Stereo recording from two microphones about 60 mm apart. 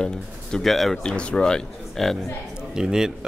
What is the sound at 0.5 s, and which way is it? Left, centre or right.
Speech, centre.